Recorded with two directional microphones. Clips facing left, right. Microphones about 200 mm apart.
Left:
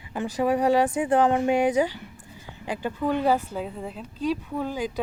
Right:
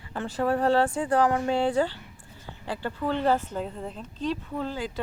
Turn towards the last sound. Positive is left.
turn(degrees=15)  # may be behind; listen again after turning